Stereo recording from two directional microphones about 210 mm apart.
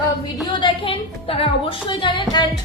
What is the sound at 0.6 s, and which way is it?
A woman's voice, 25° left (ahead or behind).